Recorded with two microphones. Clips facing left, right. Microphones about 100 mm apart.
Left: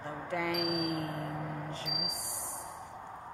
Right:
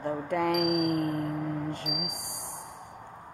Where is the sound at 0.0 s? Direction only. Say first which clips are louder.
Right 7 dB; 50° right (ahead or behind).